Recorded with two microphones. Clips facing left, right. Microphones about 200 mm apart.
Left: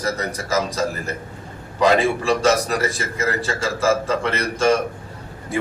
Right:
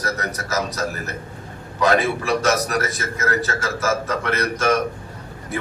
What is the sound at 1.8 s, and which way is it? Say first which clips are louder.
A man's voice: left 2 dB; 30° left (ahead or behind).